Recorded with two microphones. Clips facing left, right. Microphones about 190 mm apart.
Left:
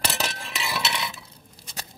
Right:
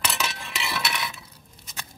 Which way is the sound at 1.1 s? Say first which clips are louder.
Left 1 dB; 35° left (ahead or behind).